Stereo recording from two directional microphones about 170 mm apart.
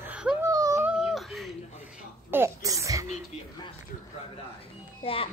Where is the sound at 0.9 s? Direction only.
5° right (ahead or behind).